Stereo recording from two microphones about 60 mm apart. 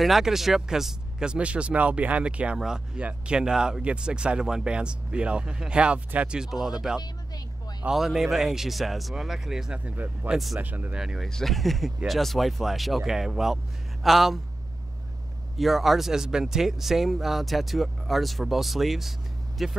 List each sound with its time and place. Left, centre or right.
0.0 s speech: centre
1.3 s speech: centre
7.9 s speech: centre
9.8 s speech: right
10.3 s speech: centre
10.6 s speech: right
11.0 s speech: centre
11.2 s speech: centre
15.5 s speech: centre